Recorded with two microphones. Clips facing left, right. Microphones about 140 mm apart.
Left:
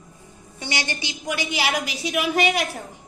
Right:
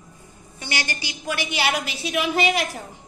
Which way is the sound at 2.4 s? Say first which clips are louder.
Even; centre (ahead or behind).